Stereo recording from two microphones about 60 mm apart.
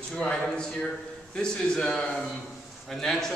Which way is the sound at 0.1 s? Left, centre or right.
Centre.